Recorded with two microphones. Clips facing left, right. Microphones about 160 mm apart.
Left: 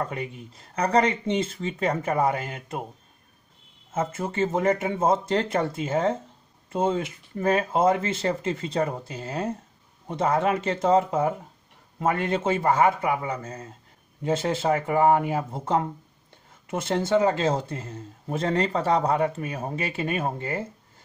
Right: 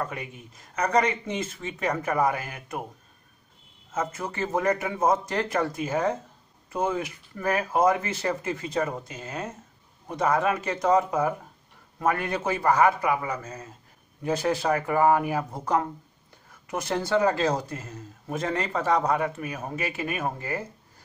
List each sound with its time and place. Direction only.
0.0 s speech: 30° left (ahead or behind)
3.9 s speech: 25° left (ahead or behind)